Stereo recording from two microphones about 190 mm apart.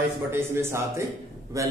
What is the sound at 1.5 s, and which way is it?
Speech, 15° right (ahead or behind).